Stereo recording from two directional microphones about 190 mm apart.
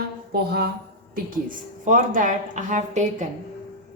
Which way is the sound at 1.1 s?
45° right (ahead or behind).